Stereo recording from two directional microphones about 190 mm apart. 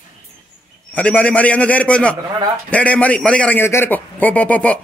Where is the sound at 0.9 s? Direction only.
10° left (ahead or behind).